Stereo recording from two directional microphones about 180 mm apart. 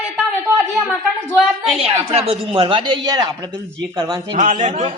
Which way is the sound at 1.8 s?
30° right (ahead or behind).